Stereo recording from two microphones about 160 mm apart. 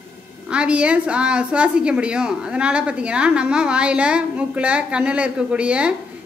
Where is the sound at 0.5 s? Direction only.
5° right (ahead or behind).